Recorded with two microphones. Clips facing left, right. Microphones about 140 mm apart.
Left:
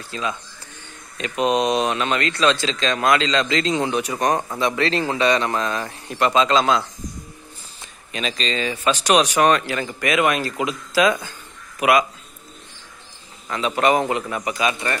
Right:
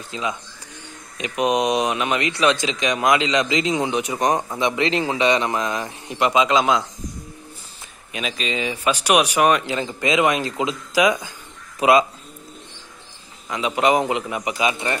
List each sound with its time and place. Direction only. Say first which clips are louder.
0.1 s speech: even; 15° right (ahead or behind)
8.1 s speech: left 1 dB; 10° right (ahead or behind)
11.8 s speech: right 2 dB; 25° right (ahead or behind)
13.5 s speech: even; 15° right (ahead or behind)